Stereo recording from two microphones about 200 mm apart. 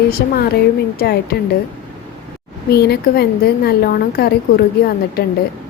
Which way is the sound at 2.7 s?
55° left (ahead or behind).